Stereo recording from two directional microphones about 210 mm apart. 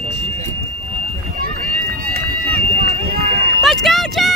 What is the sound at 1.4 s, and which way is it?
Run, 45° right (ahead or behind).